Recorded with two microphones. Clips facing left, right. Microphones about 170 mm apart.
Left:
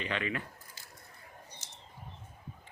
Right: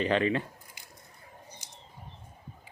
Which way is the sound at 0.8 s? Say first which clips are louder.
Right 1 dB; 15° right (ahead or behind).